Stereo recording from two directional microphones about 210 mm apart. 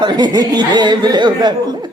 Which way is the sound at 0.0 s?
20° right (ahead or behind).